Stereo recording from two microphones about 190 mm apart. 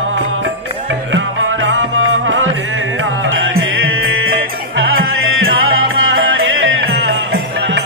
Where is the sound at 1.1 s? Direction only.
90° right.